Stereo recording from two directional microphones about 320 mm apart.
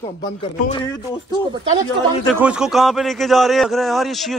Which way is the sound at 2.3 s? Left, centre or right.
Centre.